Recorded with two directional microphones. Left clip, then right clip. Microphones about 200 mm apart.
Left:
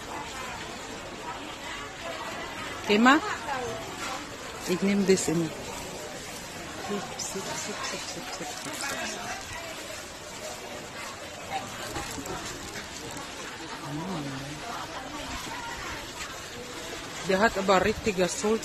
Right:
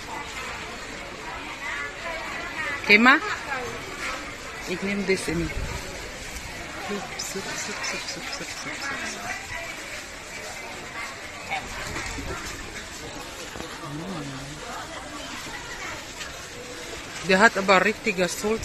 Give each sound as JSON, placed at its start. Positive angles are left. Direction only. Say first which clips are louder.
{"t": 2.9, "sound": "a woman's voice", "louder": "right 5 dB", "side_deg": 0}
{"t": 4.6, "sound": "speech", "louder": "left 1 dB", "side_deg": 30}
{"t": 17.3, "sound": "speech", "louder": "right 5 dB", "side_deg": -15}